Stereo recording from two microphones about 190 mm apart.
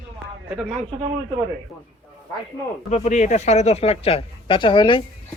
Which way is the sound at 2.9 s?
40° left (ahead or behind).